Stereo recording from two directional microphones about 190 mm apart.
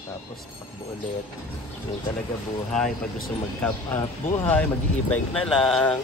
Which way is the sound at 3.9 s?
10° left (ahead or behind).